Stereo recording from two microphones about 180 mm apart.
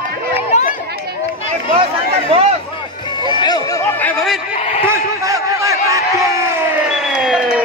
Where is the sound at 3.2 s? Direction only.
25° left (ahead or behind).